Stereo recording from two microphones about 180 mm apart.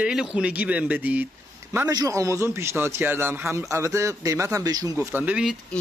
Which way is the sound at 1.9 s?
20° right (ahead or behind).